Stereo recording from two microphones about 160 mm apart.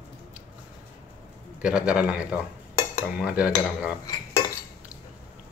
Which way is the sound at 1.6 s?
5° right (ahead or behind).